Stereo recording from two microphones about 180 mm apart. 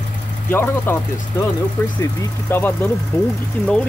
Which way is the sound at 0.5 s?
15° left (ahead or behind).